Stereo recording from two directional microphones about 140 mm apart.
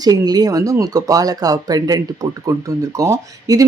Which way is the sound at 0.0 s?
30° right (ahead or behind).